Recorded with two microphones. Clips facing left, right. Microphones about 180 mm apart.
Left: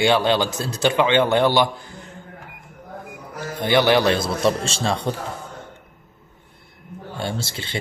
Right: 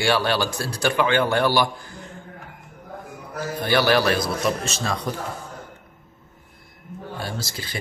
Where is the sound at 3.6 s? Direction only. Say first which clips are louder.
Left 3 dB; 20° left (ahead or behind).